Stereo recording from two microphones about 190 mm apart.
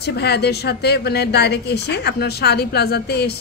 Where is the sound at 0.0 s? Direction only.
60° left (ahead or behind).